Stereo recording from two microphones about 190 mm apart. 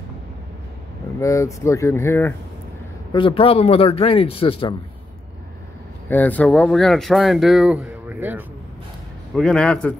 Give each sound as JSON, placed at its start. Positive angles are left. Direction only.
{"t": 1.2, "sound": "speech", "side_deg": 15}
{"t": 3.1, "sound": "a man's voice", "side_deg": 25}
{"t": 6.0, "sound": "speech", "side_deg": 10}
{"t": 9.3, "sound": "speech", "side_deg": 5}